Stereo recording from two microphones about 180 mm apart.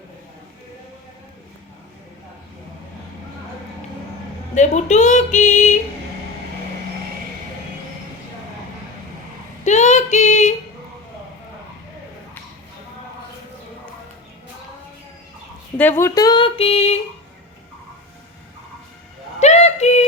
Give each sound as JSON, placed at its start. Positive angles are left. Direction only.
{"t": 4.5, "sound": "speech", "side_deg": 40}
{"t": 9.6, "sound": "female singing", "side_deg": 40}
{"t": 15.8, "sound": "speech", "side_deg": 15}
{"t": 19.4, "sound": "a sound", "side_deg": 40}